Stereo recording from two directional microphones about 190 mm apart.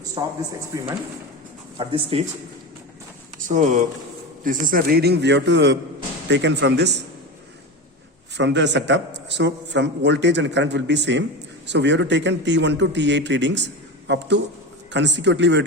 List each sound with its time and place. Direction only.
0.0 s a sound: 20° right (ahead or behind)
0.7 s speech: 15° right (ahead or behind)
1.8 s speech: 30° right (ahead or behind)
3.5 s a man's voice: 40° right (ahead or behind); by 7.0 s 65° right (ahead or behind)
8.4 s a man's voice: 70° right (ahead or behind)